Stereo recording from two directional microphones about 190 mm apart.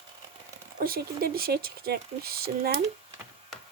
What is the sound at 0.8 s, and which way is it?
Speech, 50° right (ahead or behind).